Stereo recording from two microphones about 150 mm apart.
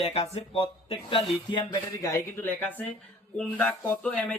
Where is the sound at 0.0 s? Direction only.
40° left (ahead or behind).